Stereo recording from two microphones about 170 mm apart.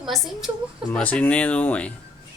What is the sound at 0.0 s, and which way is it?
A woman's voice, centre (ahead or behind).